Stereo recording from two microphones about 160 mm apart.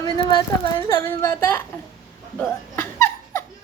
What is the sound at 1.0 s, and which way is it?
Speech, 15° left (ahead or behind).